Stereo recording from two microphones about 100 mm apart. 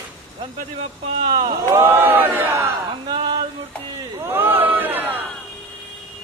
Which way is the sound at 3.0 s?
55° right (ahead or behind).